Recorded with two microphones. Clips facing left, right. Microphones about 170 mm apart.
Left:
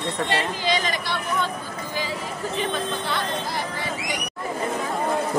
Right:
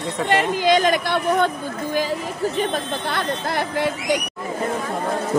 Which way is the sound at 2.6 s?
50° right (ahead or behind).